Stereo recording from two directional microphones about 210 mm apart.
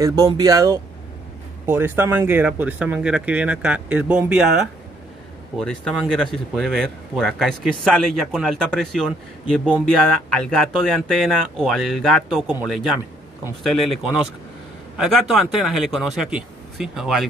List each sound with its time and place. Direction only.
0.0 s speech: 15° right (ahead or behind)
5.6 s speech: centre (ahead or behind)